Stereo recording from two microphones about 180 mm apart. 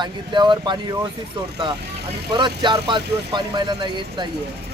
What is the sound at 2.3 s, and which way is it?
Speech, 25° right (ahead or behind).